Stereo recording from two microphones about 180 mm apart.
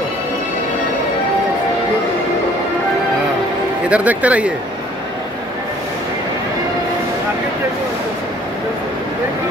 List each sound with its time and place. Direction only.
3.9 s speech: 10° right (ahead or behind)